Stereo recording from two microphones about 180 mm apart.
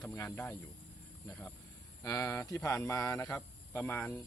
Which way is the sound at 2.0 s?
15° left (ahead or behind).